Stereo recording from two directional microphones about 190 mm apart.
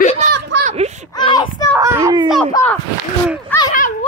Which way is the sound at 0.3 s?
60° right (ahead or behind).